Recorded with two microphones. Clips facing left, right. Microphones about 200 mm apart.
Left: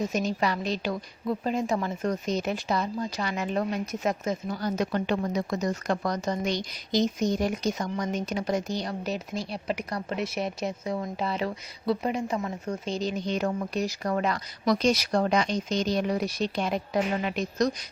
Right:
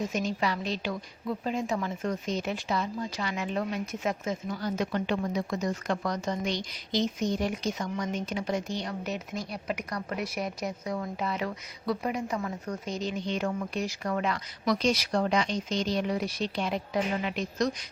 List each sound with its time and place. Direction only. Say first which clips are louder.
0.1 s a woman's voice: left 2 dB; 40° left (ahead or behind)